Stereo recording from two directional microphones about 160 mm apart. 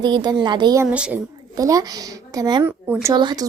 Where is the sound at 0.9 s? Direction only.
5° right (ahead or behind).